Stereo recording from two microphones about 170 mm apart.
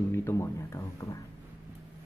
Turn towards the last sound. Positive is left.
turn(degrees=20)  # may be behind; listen again after turning